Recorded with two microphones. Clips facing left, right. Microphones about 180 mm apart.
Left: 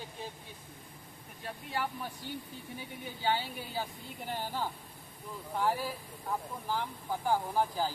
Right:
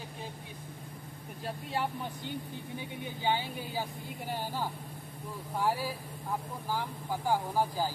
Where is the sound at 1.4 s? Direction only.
25° right (ahead or behind).